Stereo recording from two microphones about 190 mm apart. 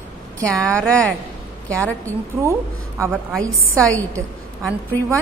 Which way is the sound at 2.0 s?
15° right (ahead or behind).